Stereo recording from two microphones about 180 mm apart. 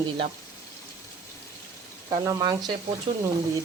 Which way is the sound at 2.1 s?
25° right (ahead or behind).